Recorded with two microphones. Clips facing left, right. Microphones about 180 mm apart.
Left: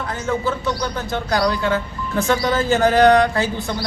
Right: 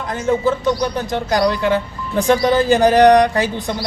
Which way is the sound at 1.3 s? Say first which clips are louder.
Right 3 dB; 15° right (ahead or behind).